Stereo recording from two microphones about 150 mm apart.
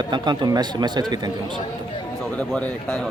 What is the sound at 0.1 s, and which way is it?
Speech, 30° right (ahead or behind).